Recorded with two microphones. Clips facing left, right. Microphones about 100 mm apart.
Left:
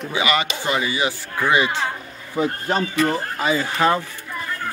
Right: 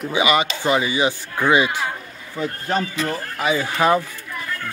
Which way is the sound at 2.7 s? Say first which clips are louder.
Left 3 dB; 30° left (ahead or behind).